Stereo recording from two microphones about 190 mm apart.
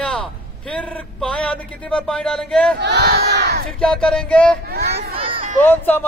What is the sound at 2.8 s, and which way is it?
Battle cry, 60° right (ahead or behind).